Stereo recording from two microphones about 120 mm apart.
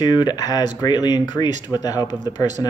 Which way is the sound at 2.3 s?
80° right.